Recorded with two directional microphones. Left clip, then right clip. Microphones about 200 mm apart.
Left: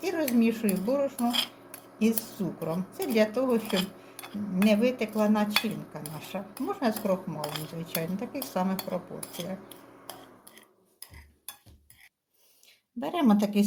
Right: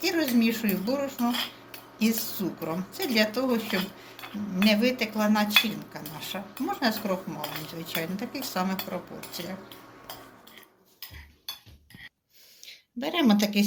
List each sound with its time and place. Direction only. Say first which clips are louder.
0.0 s cutlery: right 2 dB; 40° left (ahead or behind)
12.6 s speech: right 2 dB; 45° left (ahead or behind)